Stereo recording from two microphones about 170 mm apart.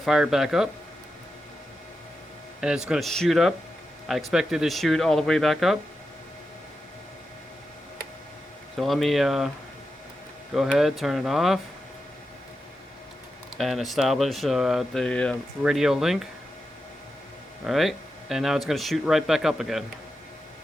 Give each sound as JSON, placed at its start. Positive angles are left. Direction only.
{"t": 0.0, "sound": "speech", "side_deg": 0}
{"t": 2.6, "sound": "speech", "side_deg": -5}
{"t": 8.8, "sound": "speech", "side_deg": 0}
{"t": 10.5, "sound": "speech", "side_deg": 0}
{"t": 13.6, "sound": "speech", "side_deg": 0}
{"t": 17.7, "sound": "speech", "side_deg": 0}